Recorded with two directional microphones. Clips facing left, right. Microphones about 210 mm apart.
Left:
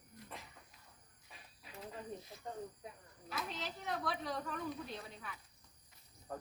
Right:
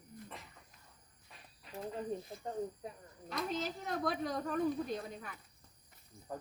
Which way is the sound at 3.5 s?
45° right (ahead or behind).